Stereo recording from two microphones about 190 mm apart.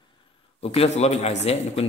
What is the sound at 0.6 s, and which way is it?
A man's voice, 30° left (ahead or behind).